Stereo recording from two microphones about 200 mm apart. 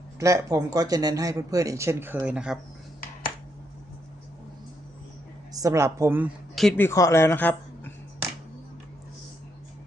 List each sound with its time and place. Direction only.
0.2 s speech: 15° right (ahead or behind)
5.5 s speech: 15° right (ahead or behind)
6.6 s speech: 5° left (ahead or behind)